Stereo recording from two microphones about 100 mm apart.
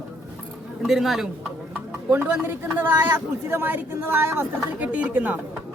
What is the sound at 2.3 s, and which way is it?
Speech, 20° right (ahead or behind).